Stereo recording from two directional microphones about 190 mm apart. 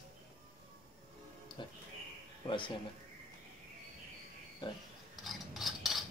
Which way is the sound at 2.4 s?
25° left (ahead or behind).